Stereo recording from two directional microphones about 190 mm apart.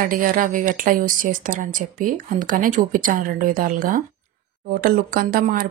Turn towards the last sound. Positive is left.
turn(degrees=-50)  # may be behind; listen again after turning